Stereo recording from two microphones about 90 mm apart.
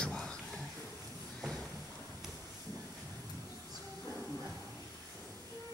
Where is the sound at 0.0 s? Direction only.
10° left (ahead or behind).